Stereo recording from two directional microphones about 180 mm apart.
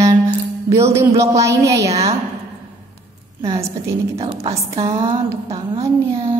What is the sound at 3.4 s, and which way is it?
Speech, 15° right (ahead or behind).